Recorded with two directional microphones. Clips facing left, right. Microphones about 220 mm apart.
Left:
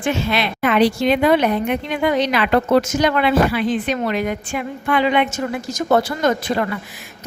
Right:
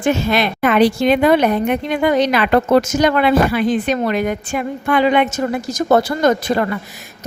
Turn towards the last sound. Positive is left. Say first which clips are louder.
# right 3 dB
turn(degrees=-40)  # may be behind; listen again after turning